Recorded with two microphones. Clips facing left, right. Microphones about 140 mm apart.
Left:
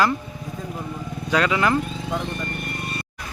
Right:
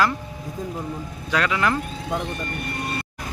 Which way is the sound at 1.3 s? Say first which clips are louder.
Left 2 dB; 5° left (ahead or behind).